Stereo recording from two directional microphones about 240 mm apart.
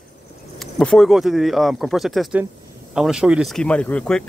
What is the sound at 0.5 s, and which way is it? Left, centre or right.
Speech, centre.